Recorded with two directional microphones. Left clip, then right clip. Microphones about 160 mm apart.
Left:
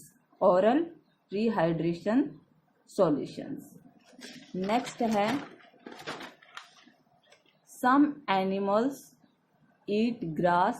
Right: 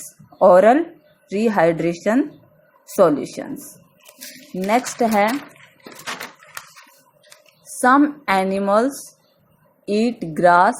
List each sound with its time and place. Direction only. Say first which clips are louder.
0.3 s a woman's voice: right 12 dB; 35° right (ahead or behind)
4.6 s a woman's voice: right 11 dB; 30° right (ahead or behind)
7.8 s a woman's voice: right 10 dB; 35° right (ahead or behind)